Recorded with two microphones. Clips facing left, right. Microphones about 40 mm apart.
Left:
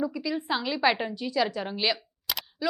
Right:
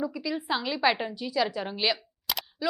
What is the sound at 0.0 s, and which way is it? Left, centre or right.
A woman's voice, centre.